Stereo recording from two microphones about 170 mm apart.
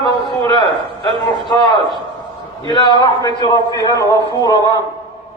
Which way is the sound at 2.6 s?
25° left (ahead or behind).